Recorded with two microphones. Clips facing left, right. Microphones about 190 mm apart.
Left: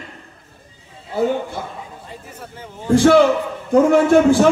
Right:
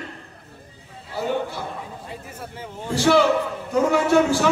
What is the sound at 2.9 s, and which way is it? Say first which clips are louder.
A man's voice: left 6 dB; 50° left (ahead or behind).